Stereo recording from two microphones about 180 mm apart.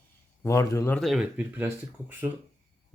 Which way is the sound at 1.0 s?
Centre (ahead or behind).